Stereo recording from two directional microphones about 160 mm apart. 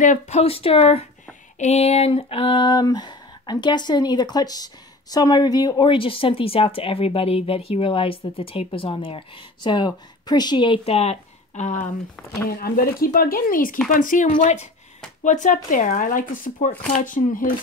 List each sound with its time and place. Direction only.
0.0 s a woman's voice: 50° left (ahead or behind)
12.4 s speech: 70° left (ahead or behind)